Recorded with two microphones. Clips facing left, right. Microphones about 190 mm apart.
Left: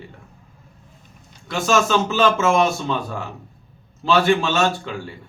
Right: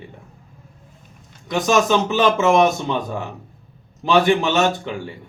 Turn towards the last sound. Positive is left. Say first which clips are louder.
# right 2 dB
turn(degrees=-20)  # may be behind; listen again after turning